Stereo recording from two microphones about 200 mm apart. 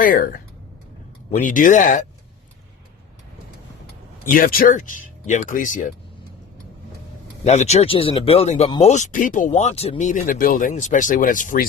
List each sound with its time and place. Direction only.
0.0 s speech: 45° left (ahead or behind)
4.3 s speech: 45° left (ahead or behind)
7.4 s speech: 35° left (ahead or behind)